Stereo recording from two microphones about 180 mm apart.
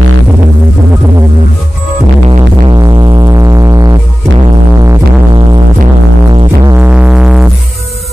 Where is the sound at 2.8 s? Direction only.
25° right (ahead or behind).